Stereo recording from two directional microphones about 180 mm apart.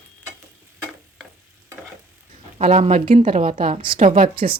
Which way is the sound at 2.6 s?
40° right (ahead or behind).